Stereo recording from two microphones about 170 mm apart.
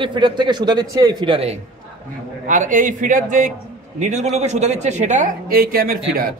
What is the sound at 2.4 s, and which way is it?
Speech, 50° right (ahead or behind).